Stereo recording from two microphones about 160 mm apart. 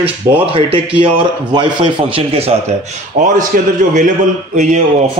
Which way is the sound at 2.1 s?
40° right (ahead or behind).